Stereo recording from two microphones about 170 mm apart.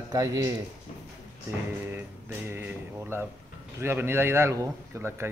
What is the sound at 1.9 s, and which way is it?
A man's voice, 10° right (ahead or behind).